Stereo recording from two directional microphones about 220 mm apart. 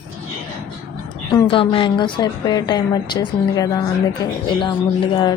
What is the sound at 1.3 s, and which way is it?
A woman's voice, 20° left (ahead or behind).